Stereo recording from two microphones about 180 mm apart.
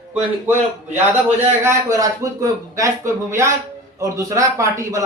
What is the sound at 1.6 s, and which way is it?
A man's voice, 15° right (ahead or behind).